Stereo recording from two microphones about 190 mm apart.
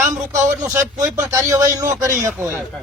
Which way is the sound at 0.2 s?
5° right (ahead or behind).